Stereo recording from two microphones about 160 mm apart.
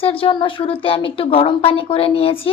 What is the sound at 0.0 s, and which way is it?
Speech, 35° left (ahead or behind).